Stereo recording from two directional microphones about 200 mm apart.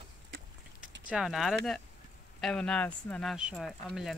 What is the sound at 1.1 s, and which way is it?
Speech, centre (ahead or behind).